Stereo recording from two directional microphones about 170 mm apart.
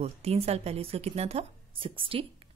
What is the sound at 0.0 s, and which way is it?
A woman's voice, 35° right (ahead or behind).